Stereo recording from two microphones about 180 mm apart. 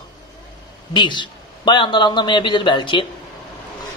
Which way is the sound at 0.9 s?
25° left (ahead or behind).